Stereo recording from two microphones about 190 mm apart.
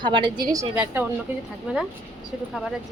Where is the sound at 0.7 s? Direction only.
5° right (ahead or behind).